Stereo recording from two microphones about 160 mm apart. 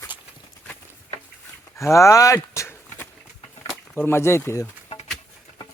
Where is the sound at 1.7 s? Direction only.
20° left (ahead or behind).